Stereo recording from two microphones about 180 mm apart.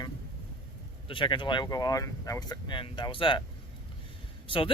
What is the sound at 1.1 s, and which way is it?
Speech, 25° left (ahead or behind).